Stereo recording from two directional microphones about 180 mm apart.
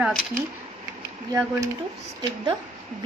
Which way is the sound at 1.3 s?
15° right (ahead or behind).